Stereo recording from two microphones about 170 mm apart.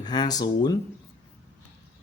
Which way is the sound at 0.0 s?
25° left (ahead or behind).